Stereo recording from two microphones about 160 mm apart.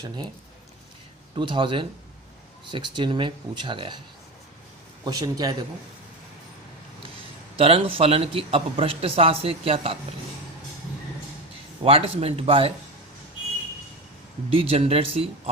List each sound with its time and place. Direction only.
1.4 s a man's voice: 30° right (ahead or behind)
5.0 s speech: 25° right (ahead or behind)
7.5 s a man's voice: 35° right (ahead or behind)
11.8 s a man's voice: 35° right (ahead or behind)
14.5 s a man's voice: 35° right (ahead or behind)